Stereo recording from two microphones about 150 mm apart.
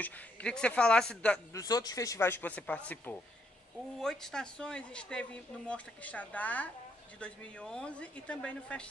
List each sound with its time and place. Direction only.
0.0 s speech: 5° left (ahead or behind)
1.5 s speech: 25° left (ahead or behind); by 8.8 s 5° left (ahead or behind)